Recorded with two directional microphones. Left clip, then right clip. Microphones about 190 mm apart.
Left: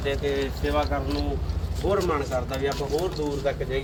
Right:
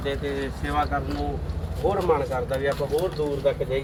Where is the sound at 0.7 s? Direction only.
55° left (ahead or behind).